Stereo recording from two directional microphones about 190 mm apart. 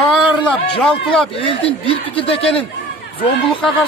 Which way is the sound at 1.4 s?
30° left (ahead or behind).